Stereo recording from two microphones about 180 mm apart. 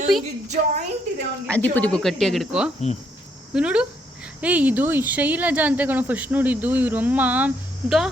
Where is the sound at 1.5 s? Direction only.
10° left (ahead or behind).